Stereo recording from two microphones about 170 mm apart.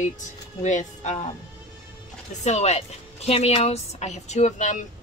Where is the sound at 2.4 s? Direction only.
40° left (ahead or behind).